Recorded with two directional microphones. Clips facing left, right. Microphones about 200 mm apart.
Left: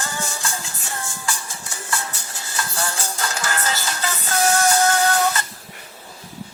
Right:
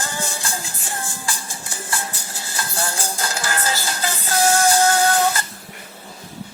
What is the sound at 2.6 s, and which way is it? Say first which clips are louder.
Music: even; 30° right (ahead or behind).